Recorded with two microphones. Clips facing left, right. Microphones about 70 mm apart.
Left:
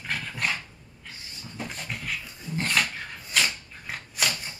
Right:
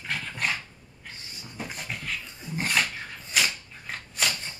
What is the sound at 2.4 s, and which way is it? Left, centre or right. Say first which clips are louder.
Dog: even; centre.